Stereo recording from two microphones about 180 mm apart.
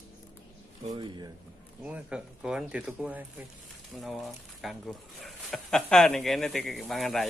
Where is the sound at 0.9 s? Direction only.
25° right (ahead or behind).